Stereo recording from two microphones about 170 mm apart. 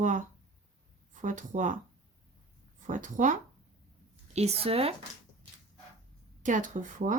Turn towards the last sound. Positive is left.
turn(degrees=-50)  # may be behind; listen again after turning